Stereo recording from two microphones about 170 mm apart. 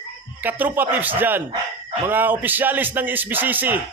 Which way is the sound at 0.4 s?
10° right (ahead or behind).